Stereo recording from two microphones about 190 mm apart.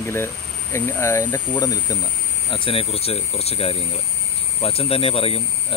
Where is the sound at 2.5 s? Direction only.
30° left (ahead or behind).